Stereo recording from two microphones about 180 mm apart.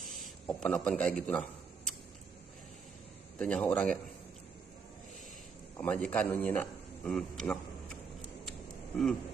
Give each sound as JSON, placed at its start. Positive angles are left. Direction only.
{"t": 0.0, "sound": "a man's voice", "side_deg": 0}
{"t": 3.3, "sound": "a man's voice", "side_deg": 5}
{"t": 5.8, "sound": "a man's voice", "side_deg": 5}
{"t": 8.5, "sound": "a sound", "side_deg": 5}